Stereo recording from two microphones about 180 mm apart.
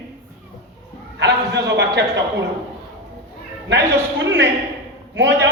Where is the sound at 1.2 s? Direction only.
70° right (ahead or behind).